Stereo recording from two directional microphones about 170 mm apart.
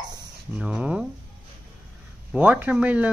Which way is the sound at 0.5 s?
5° right (ahead or behind).